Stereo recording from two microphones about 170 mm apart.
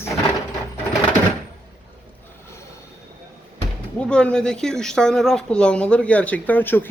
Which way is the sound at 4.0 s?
5° left (ahead or behind).